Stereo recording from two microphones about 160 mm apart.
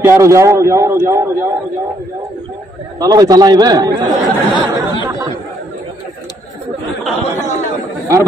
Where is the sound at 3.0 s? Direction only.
25° right (ahead or behind).